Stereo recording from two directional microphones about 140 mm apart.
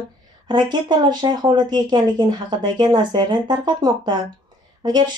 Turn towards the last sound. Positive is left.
turn(degrees=-30)  # may be behind; listen again after turning